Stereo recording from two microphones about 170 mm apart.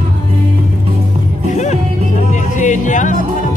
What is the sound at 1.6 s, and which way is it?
Music, 45° left (ahead or behind).